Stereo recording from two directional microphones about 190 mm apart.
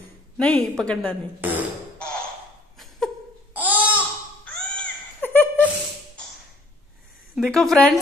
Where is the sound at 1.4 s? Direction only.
10° right (ahead or behind).